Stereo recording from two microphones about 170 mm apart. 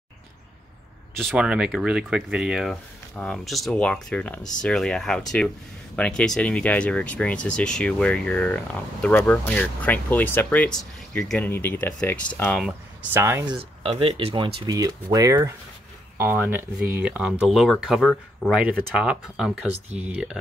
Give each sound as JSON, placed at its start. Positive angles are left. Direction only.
{"t": 1.1, "sound": "speech", "side_deg": 0}
{"t": 13.1, "sound": "speech", "side_deg": -15}
{"t": 13.8, "sound": "speech", "side_deg": -35}